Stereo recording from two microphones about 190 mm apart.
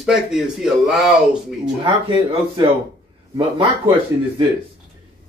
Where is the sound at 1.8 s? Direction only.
25° right (ahead or behind).